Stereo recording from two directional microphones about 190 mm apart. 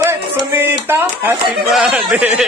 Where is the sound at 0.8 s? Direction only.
10° right (ahead or behind).